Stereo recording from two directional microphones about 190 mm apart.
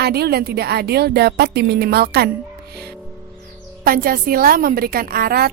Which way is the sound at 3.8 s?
50° right (ahead or behind).